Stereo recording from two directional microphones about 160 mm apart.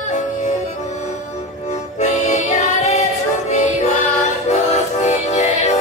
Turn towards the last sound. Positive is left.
turn(degrees=45)  # may be behind; listen again after turning